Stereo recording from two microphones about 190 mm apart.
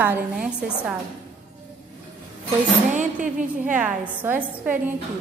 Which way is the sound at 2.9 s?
40° right (ahead or behind).